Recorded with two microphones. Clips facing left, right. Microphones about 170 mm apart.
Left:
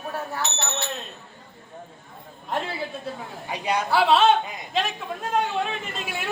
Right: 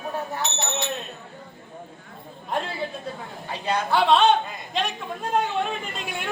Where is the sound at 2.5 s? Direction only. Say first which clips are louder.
Even; centre (ahead or behind).